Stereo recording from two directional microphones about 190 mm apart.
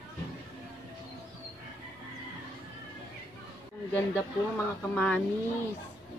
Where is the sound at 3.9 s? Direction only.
10° left (ahead or behind).